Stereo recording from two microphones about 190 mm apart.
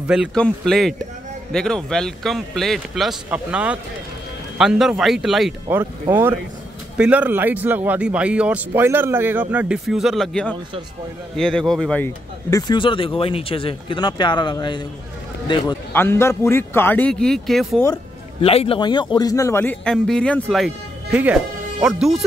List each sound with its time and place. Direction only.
0.0 s a man's voice: 5° right (ahead or behind)
5.7 s a man's voice: 10° right (ahead or behind); by 12.1 s 5° left (ahead or behind)
12.4 s speech: 20° left (ahead or behind)
15.9 s a man's voice: 10° left (ahead or behind)
18.4 s a man's voice: 30° left (ahead or behind); by 22.1 s 5° right (ahead or behind)